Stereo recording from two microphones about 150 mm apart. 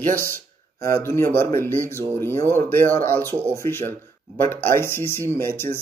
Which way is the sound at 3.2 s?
15° right (ahead or behind).